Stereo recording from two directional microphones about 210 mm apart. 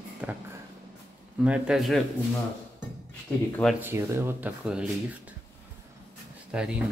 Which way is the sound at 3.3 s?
5° left (ahead or behind).